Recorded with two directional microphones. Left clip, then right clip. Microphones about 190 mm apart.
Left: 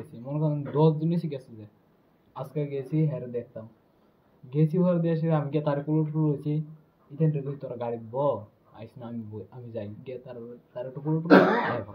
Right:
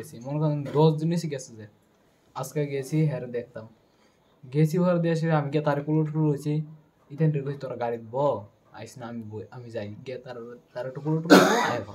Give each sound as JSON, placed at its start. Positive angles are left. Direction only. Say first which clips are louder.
{"t": 0.1, "sound": "speech", "louder": "right 2 dB", "side_deg": -15}